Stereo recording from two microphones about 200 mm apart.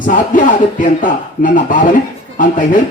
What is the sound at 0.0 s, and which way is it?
A man's voice, 40° left (ahead or behind).